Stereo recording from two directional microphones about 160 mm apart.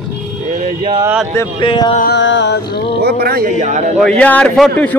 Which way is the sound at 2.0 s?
90° left.